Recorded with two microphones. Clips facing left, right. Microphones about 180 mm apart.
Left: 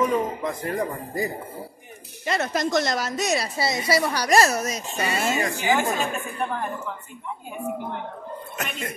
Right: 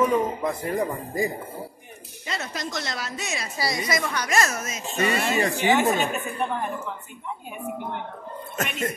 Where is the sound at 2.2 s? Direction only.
50° left (ahead or behind).